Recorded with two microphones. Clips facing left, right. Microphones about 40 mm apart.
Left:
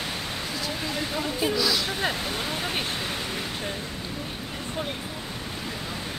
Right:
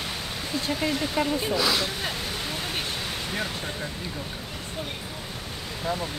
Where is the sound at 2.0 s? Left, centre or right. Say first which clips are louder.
Left 3 dB; centre.